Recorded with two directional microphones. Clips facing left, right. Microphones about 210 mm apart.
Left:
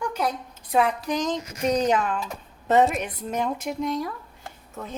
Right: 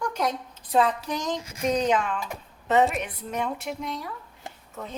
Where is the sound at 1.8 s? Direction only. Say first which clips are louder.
Left 1 dB; 45° left (ahead or behind).